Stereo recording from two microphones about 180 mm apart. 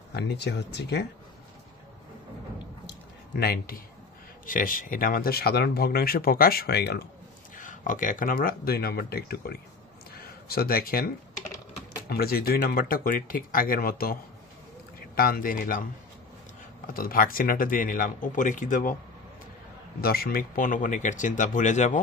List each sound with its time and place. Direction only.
0.1 s speech: 65° left (ahead or behind)
2.9 s a sound: 60° left (ahead or behind)
4.5 s speech: 50° left (ahead or behind)
7.5 s speech: 45° left (ahead or behind)
10.1 s a sound: 60° left (ahead or behind)
12.1 s a man's voice: 55° left (ahead or behind)
20.0 s speech: 55° left (ahead or behind)